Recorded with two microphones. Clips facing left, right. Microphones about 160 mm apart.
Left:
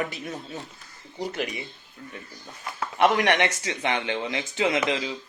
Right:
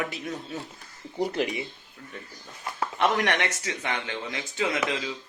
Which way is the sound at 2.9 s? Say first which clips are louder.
Left 4 dB; 15° left (ahead or behind).